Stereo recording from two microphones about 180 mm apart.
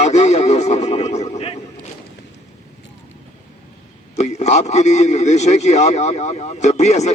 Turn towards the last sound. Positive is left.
turn(degrees=40)  # may be behind; listen again after turning